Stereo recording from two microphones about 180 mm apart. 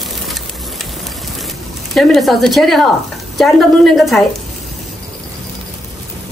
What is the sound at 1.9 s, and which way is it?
Speech, centre (ahead or behind).